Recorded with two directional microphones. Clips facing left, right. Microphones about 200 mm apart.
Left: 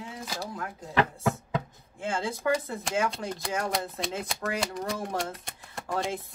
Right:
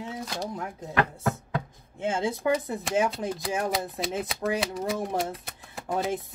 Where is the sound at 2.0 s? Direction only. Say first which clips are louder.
Right 3 dB; 20° right (ahead or behind).